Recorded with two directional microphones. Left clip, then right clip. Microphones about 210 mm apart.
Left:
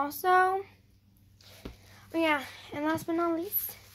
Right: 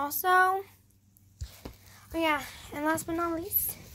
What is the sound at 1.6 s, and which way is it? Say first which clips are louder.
A child's voice: left 1 dB; 5° left (ahead or behind).